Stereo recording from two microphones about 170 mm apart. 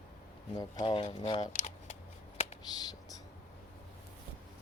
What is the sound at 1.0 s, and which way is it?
Speech, 40° left (ahead or behind).